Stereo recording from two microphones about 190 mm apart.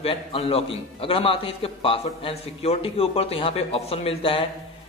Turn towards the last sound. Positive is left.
turn(degrees=30)  # may be behind; listen again after turning